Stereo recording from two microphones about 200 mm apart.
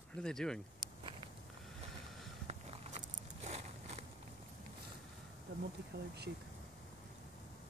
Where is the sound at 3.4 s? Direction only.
35° right (ahead or behind).